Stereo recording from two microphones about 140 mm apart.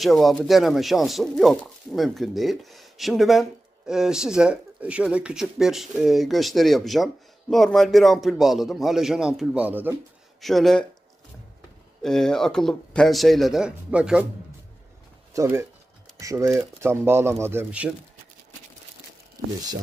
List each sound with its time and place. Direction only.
0.0 s speech: centre (ahead or behind)
10.4 s speech: centre (ahead or behind)
12.0 s speech: 5° left (ahead or behind)
15.3 s speech: 20° right (ahead or behind)